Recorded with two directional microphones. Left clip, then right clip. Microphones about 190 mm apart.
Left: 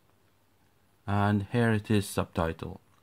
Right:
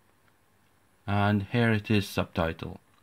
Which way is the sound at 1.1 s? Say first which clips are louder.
Right 1 dB; 5° right (ahead or behind).